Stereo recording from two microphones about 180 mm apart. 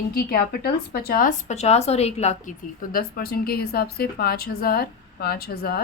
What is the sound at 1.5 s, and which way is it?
A woman's voice, 35° left (ahead or behind).